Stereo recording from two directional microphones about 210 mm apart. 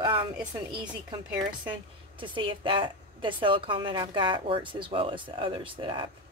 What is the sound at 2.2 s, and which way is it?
A woman's voice, 20° right (ahead or behind).